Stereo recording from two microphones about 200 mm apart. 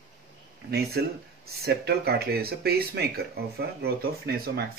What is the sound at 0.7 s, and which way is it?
Speech, 50° right (ahead or behind).